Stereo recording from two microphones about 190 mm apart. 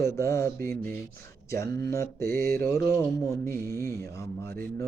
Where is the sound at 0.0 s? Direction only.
15° left (ahead or behind).